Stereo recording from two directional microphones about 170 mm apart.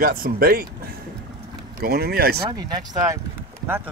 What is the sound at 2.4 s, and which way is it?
Speech, 25° right (ahead or behind).